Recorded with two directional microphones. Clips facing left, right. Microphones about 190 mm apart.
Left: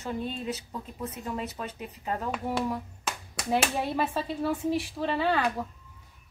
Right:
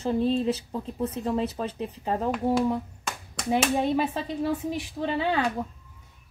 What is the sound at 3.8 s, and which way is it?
Speech, 20° right (ahead or behind).